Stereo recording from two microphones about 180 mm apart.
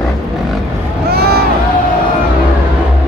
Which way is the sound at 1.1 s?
60° right (ahead or behind).